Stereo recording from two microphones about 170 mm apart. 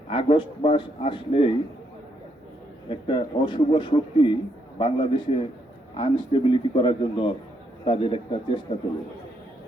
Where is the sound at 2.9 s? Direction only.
30° left (ahead or behind).